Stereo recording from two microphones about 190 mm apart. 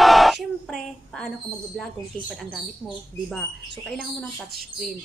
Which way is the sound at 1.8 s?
5° left (ahead or behind).